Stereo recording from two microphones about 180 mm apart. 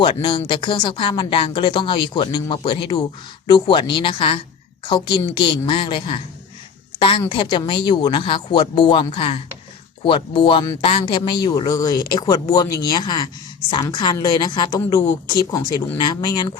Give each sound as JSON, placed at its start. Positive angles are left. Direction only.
{"t": 0.0, "sound": "speech", "side_deg": 25}